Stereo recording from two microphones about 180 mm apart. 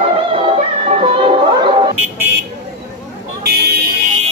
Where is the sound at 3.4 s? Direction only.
60° right (ahead or behind).